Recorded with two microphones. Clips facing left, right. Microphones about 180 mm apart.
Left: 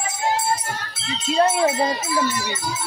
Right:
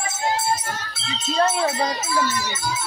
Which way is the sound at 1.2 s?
15° left (ahead or behind).